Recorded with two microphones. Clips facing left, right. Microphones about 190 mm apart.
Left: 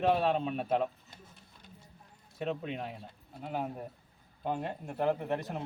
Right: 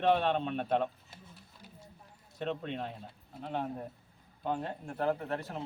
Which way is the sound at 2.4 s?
5° left (ahead or behind).